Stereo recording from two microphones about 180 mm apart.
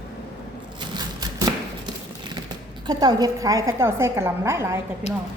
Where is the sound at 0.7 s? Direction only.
25° right (ahead or behind).